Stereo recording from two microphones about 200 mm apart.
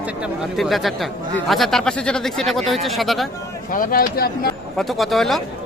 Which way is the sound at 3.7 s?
45° left (ahead or behind).